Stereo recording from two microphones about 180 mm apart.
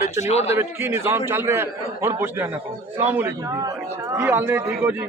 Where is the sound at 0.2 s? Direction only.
35° left (ahead or behind).